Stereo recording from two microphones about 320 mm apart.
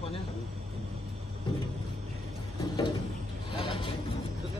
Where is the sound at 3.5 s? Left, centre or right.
Centre.